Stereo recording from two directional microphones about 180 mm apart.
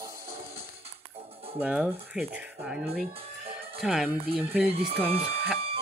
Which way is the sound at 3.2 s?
30° right (ahead or behind).